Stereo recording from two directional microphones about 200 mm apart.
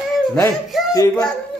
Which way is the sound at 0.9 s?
15° left (ahead or behind).